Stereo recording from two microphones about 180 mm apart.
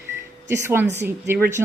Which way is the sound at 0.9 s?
15° right (ahead or behind).